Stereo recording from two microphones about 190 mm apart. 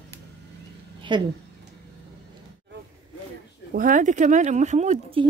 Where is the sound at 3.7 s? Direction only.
45° right (ahead or behind).